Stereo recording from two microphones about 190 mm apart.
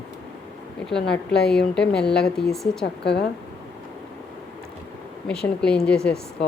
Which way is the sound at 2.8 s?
60° left (ahead or behind).